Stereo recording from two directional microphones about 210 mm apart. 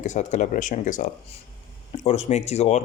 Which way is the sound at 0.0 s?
35° left (ahead or behind).